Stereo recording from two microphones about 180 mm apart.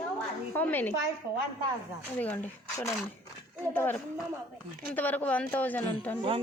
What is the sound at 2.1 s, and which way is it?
A woman's voice, 10° left (ahead or behind).